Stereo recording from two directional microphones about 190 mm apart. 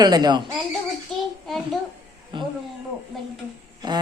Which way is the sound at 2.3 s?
25° right (ahead or behind).